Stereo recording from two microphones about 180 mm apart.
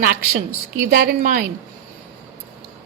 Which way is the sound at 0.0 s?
60° right (ahead or behind).